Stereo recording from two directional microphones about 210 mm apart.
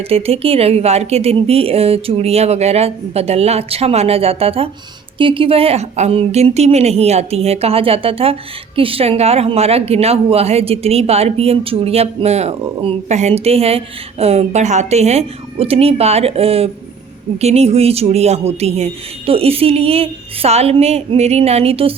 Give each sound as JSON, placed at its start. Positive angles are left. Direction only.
{"t": 0.1, "sound": "a woman's voice", "side_deg": -30}